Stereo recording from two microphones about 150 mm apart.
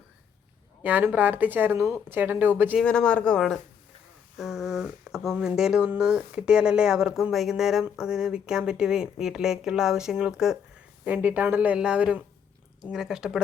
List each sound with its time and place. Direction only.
0.8 s speech: 10° right (ahead or behind)
2.8 s speech: 5° left (ahead or behind)